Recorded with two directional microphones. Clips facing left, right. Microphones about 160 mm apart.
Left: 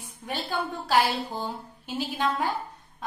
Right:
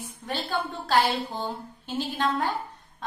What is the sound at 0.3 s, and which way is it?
A woman's voice, 15° left (ahead or behind).